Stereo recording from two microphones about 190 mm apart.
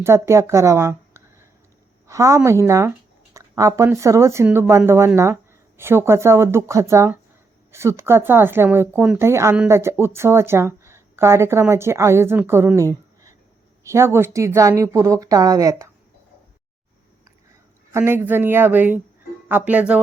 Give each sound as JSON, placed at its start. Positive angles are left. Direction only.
{"t": 0.0, "sound": "speech", "side_deg": -15}
{"t": 17.9, "sound": "speech", "side_deg": -10}